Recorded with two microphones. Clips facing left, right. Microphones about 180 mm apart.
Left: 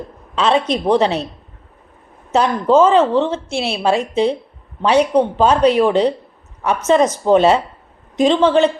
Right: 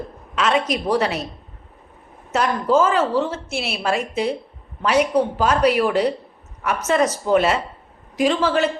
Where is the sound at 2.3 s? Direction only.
30° left (ahead or behind).